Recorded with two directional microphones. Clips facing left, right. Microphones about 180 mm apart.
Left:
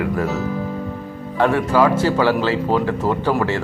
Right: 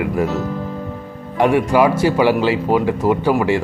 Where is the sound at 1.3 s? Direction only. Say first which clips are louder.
Right 2 dB; 15° right (ahead or behind).